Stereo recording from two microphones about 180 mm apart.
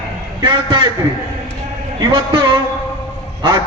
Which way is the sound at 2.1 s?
25° right (ahead or behind).